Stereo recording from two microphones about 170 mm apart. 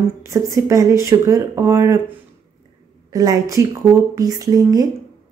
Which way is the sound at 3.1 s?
20° right (ahead or behind).